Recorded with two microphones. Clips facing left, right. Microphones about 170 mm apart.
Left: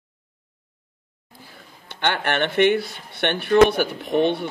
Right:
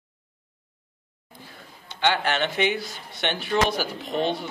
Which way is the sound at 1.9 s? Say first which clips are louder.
Even; 60° left (ahead or behind).